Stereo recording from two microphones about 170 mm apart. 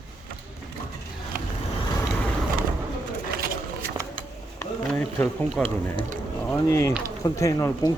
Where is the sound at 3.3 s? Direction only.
60° right (ahead or behind).